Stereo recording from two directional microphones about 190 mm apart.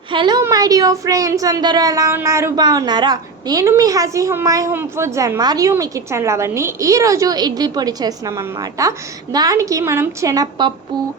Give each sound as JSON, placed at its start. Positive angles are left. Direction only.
{"t": 0.1, "sound": "a woman's voice", "side_deg": -25}